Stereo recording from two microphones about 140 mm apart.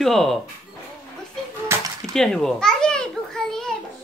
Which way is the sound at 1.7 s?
15° right (ahead or behind).